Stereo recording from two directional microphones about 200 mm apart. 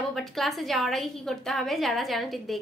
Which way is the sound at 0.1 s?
Centre (ahead or behind).